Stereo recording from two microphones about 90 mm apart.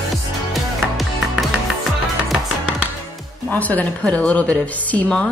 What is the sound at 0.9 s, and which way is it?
Music, 10° right (ahead or behind).